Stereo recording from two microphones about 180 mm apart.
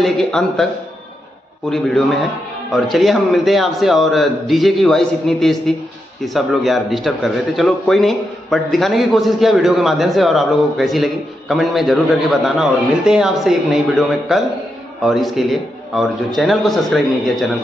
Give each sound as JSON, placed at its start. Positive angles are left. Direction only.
{"t": 0.0, "sound": "a man's voice", "side_deg": 0}
{"t": 1.7, "sound": "a man's voice", "side_deg": 0}